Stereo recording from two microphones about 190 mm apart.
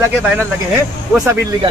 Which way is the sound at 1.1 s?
20° right (ahead or behind).